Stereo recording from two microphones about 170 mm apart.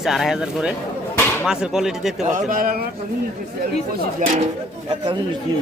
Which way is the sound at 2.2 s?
50° right (ahead or behind).